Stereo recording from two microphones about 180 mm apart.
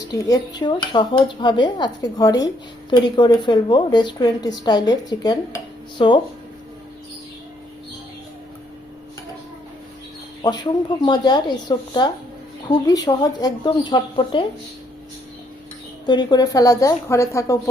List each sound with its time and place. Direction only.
0.3 s a woman's voice: 25° left (ahead or behind)
10.4 s a woman's voice: 25° left (ahead or behind)
16.0 s a woman's voice: 25° left (ahead or behind)